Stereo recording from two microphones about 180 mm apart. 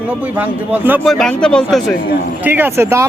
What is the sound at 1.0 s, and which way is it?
Speech, 5° left (ahead or behind).